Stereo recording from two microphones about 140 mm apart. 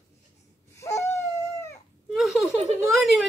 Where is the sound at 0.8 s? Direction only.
20° left (ahead or behind).